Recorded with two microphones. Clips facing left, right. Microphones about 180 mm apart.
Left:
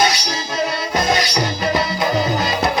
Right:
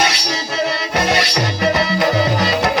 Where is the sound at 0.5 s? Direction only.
70° right (ahead or behind).